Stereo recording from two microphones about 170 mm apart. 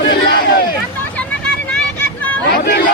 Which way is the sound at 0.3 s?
60° left (ahead or behind).